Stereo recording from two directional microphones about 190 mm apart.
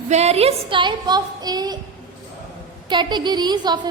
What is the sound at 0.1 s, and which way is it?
A woman's voice, 35° right (ahead or behind).